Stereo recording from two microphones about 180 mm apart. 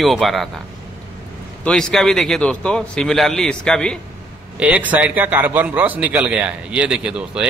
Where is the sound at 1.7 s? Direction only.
5° left (ahead or behind).